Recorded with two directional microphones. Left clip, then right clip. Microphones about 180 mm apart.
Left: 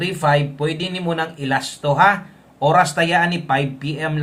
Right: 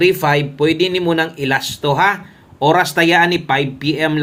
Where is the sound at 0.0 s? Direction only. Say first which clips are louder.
Right 4 dB; 35° right (ahead or behind).